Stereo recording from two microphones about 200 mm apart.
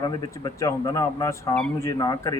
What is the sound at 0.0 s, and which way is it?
A man's voice, 20° left (ahead or behind).